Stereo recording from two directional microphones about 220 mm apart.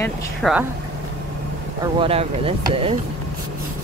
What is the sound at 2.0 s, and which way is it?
Speech, 25° right (ahead or behind).